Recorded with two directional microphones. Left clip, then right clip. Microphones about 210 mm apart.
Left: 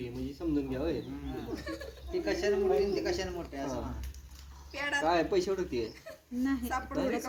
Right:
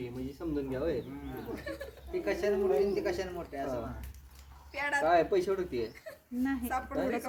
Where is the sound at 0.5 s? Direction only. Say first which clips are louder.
Right 1 dB; 30° left (ahead or behind).